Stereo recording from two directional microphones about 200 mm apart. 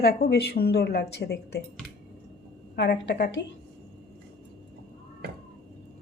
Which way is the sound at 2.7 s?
60° left (ahead or behind).